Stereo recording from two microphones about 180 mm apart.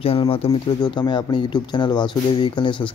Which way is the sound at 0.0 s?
30° left (ahead or behind).